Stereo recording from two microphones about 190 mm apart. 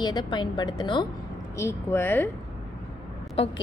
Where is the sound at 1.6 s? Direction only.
15° left (ahead or behind).